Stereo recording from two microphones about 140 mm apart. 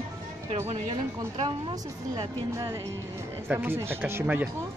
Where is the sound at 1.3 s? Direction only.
30° right (ahead or behind).